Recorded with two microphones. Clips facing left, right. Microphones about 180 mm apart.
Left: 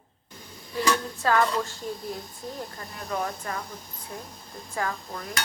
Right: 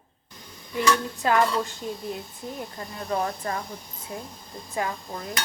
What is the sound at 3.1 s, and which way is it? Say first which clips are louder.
Speech: right 3 dB; 35° right (ahead or behind).